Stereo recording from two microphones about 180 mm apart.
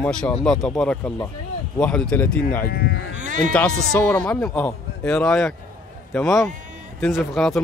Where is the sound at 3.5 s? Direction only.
10° left (ahead or behind).